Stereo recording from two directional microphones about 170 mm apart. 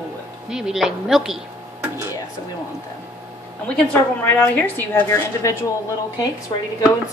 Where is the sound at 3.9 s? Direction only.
10° left (ahead or behind).